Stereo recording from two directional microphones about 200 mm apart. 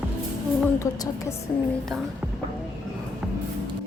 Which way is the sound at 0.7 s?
15° left (ahead or behind).